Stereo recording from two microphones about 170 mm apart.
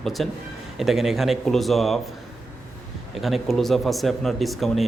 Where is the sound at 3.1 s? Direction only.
Centre (ahead or behind).